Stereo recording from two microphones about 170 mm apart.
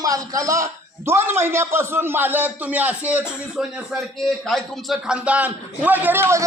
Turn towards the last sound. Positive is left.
turn(degrees=-10)  # may be behind; listen again after turning